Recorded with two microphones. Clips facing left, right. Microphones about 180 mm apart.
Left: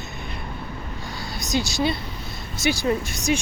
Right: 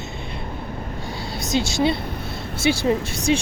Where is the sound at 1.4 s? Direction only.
25° right (ahead or behind).